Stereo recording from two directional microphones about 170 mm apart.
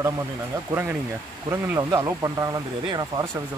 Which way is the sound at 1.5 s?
20° right (ahead or behind).